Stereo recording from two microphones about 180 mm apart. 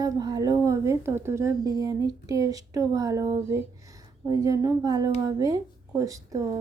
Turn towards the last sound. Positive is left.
turn(degrees=-20)  # may be behind; listen again after turning